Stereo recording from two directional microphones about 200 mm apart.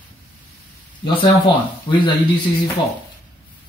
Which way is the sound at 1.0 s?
20° left (ahead or behind).